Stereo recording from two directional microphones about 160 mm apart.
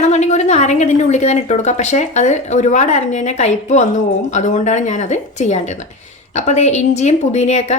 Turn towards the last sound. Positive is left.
turn(degrees=45)  # may be behind; listen again after turning